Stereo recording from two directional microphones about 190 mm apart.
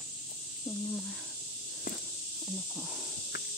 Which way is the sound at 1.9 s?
45° left (ahead or behind).